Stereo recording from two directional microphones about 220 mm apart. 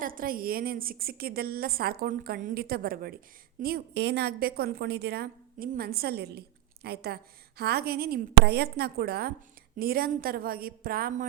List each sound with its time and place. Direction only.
0.0 s a woman's voice: 40° right (ahead or behind)